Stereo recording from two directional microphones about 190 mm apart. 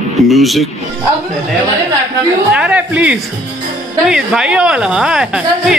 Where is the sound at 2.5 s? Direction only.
5° right (ahead or behind).